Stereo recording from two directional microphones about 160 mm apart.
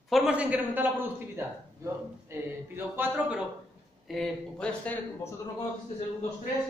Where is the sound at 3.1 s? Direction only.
5° right (ahead or behind).